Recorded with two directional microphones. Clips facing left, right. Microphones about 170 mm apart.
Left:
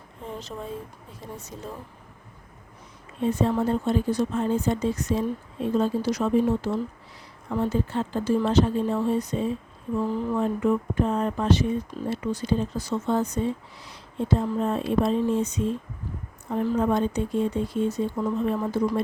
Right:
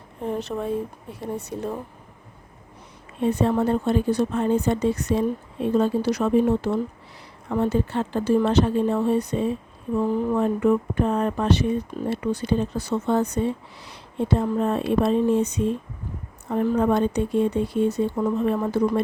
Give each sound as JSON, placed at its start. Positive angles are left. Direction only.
{"t": 0.2, "sound": "speech", "side_deg": -65}
{"t": 3.2, "sound": "speech", "side_deg": -65}